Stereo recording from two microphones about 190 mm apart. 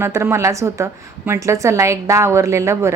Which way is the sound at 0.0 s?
15° right (ahead or behind).